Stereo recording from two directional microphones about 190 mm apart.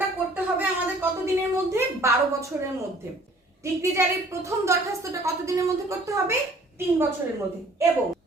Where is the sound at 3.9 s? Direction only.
15° right (ahead or behind).